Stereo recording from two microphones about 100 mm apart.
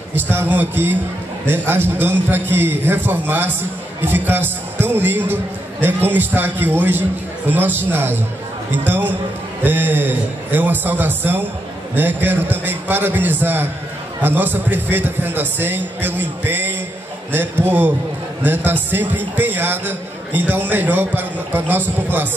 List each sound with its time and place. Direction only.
0.1 s a man's voice: 20° right (ahead or behind)